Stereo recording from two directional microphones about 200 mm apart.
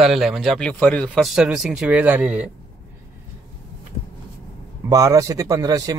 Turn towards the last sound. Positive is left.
turn(degrees=-15)  # may be behind; listen again after turning